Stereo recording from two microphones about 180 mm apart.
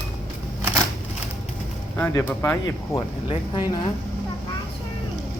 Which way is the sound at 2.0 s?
10° left (ahead or behind).